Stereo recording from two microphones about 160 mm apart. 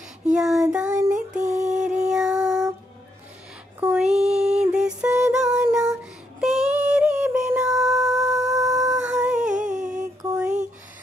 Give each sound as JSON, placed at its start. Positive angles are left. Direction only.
{"t": 0.3, "sound": "child singing", "side_deg": 0}
{"t": 0.7, "sound": "child singing", "side_deg": -15}
{"t": 1.4, "sound": "mantra", "side_deg": -50}
{"t": 1.7, "sound": "music", "side_deg": -5}
{"t": 3.8, "sound": "a sound", "side_deg": -5}
{"t": 5.2, "sound": "music", "side_deg": -5}
{"t": 6.4, "sound": "synthetic singing", "side_deg": -5}
{"t": 7.8, "sound": "music", "side_deg": -5}
{"t": 8.5, "sound": "howl", "side_deg": -20}
{"t": 8.9, "sound": "a sound", "side_deg": -5}
{"t": 9.5, "sound": "humming", "side_deg": -50}
{"t": 9.8, "sound": "music", "side_deg": -5}